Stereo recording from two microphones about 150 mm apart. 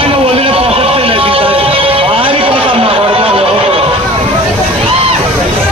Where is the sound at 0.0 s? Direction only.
40° right (ahead or behind).